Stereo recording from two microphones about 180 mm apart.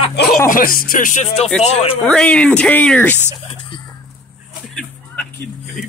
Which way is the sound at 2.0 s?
5° left (ahead or behind).